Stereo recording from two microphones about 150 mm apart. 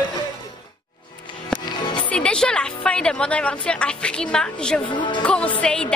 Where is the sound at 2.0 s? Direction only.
5° left (ahead or behind).